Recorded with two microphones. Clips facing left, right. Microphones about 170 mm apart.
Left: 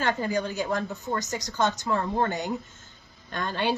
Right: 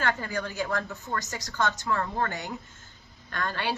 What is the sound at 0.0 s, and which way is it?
A woman's voice, 20° left (ahead or behind).